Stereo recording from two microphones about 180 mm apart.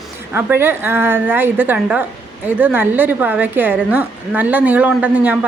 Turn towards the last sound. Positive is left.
turn(degrees=-10)  # may be behind; listen again after turning